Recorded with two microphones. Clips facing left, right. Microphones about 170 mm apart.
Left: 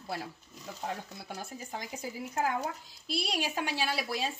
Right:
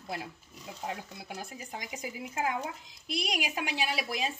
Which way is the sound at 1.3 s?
10° right (ahead or behind).